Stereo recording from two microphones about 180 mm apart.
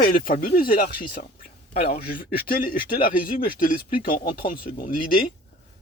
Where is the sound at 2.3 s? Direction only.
55° left (ahead or behind).